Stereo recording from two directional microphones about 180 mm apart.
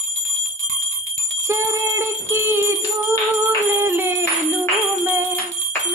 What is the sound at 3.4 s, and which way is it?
Music, 15° right (ahead or behind).